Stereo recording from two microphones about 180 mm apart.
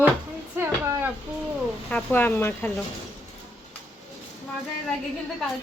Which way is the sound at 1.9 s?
10° left (ahead or behind).